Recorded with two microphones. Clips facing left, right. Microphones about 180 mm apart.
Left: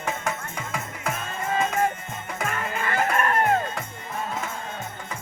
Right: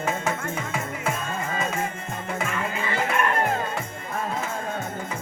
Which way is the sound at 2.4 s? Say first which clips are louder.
Even; 50° left (ahead or behind).